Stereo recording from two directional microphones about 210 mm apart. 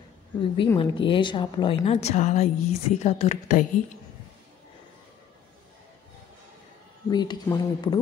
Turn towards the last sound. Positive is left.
turn(degrees=20)  # may be behind; listen again after turning